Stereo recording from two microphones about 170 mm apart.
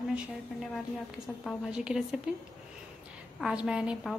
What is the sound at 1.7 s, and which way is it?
A woman's voice, 5° right (ahead or behind).